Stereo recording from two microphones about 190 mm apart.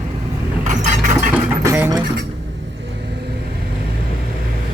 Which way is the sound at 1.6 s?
15° right (ahead or behind).